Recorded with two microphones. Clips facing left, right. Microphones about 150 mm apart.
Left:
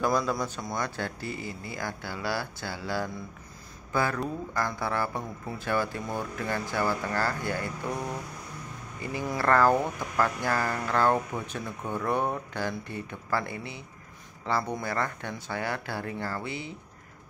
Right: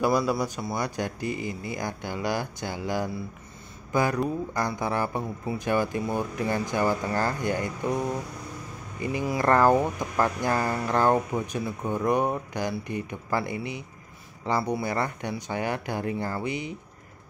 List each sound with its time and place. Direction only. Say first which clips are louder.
0.0 s speech: right 3 dB; 10° right (ahead or behind)
9.1 s speech: right 2 dB; 15° right (ahead or behind)